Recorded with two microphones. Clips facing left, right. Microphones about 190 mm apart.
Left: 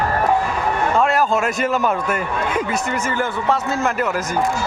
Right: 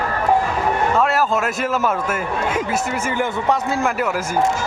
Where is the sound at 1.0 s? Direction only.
Centre (ahead or behind).